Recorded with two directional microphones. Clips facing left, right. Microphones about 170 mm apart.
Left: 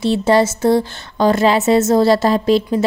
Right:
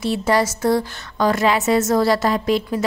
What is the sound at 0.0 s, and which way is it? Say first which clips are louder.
A woman's voice: left 5 dB; 25° left (ahead or behind).